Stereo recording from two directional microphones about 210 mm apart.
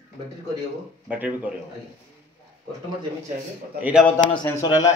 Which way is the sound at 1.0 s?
5° right (ahead or behind).